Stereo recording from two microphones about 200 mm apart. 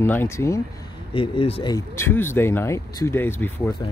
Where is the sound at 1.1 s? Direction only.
30° left (ahead or behind).